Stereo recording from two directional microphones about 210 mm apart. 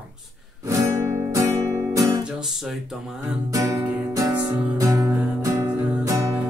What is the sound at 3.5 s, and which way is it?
Music, 15° right (ahead or behind).